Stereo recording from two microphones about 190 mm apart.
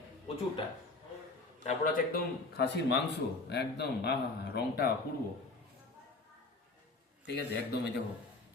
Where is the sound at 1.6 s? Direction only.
45° left (ahead or behind).